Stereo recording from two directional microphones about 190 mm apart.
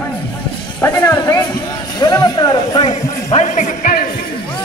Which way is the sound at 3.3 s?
40° left (ahead or behind).